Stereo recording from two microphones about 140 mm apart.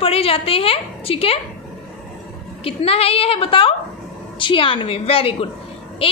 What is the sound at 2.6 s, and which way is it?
A woman's voice, 45° left (ahead or behind).